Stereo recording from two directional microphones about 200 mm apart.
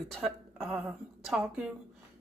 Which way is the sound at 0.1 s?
Centre (ahead or behind).